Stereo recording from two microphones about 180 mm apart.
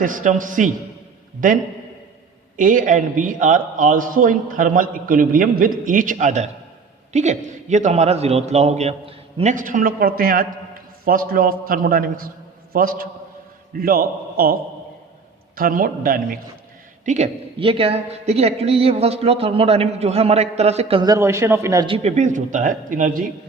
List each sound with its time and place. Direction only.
0.0 s a man's voice: 45° right (ahead or behind)
17.1 s a man's voice: 40° right (ahead or behind); by 21.9 s 20° right (ahead or behind)
21.9 s a man's voice: 40° right (ahead or behind)